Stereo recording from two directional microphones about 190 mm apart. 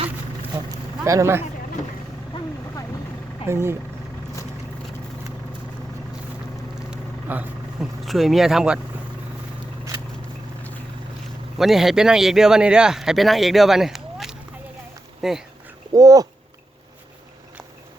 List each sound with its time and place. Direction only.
0.5 s a sound: 20° right (ahead or behind)
2.3 s vehicle: 25° left (ahead or behind)
3.4 s speech: 15° right (ahead or behind)
6.9 s vehicle: 5° right (ahead or behind)
11.5 s speech: centre (ahead or behind)
15.9 s speech: 20° right (ahead or behind)